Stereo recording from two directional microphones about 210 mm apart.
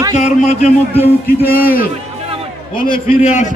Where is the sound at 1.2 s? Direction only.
45° left (ahead or behind).